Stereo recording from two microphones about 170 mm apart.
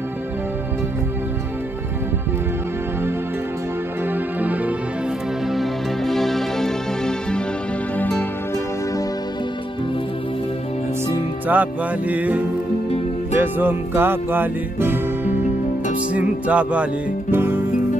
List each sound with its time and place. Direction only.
4.1 s music: 10° right (ahead or behind)
5.5 s music: centre (ahead or behind)
11.4 s music: 10° right (ahead or behind)